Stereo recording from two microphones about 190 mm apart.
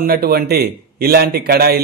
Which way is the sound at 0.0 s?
50° right (ahead or behind).